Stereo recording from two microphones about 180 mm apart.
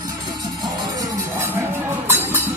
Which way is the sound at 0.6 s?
15° right (ahead or behind).